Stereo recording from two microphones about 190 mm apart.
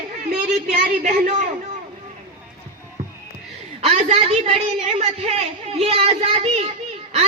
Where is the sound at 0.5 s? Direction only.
40° right (ahead or behind).